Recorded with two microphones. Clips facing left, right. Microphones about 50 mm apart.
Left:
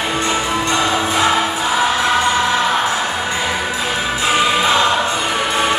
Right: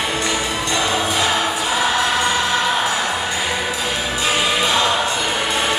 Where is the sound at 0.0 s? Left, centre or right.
Left.